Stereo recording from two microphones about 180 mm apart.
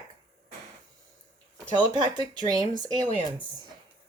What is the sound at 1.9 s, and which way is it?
Speech, 25° right (ahead or behind).